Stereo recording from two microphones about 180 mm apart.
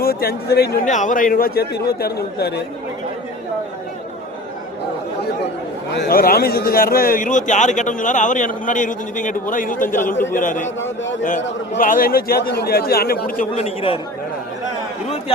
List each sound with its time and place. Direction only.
0.0 s speech: 60° left (ahead or behind)
0.9 s a man's voice: 45° left (ahead or behind); by 2.6 s 60° left (ahead or behind)
5.9 s a man's voice: 65° left (ahead or behind); by 10.7 s 45° left (ahead or behind)
10.8 s a man's voice: 90° left
11.8 s a man's voice: 50° left (ahead or behind)
13.6 s speech: 35° left (ahead or behind)